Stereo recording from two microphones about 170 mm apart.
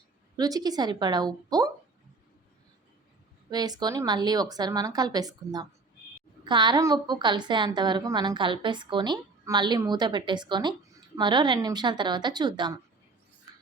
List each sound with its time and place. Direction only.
0.3 s a woman's voice: 20° right (ahead or behind)
3.5 s a woman's voice: 25° right (ahead or behind)